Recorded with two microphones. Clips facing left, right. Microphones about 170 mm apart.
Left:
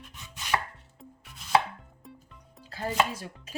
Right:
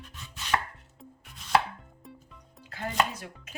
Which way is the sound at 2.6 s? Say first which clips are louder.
Left 2 dB; 30° left (ahead or behind).